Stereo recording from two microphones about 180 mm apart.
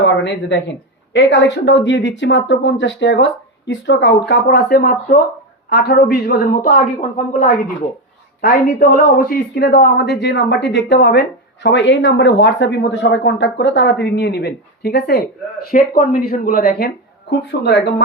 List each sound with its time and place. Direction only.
0.0 s a man's voice: 80° left; by 16.9 s 60° left (ahead or behind)
17.6 s a man's voice: 70° left (ahead or behind)